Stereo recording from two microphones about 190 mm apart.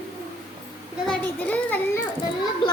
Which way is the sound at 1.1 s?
5° left (ahead or behind).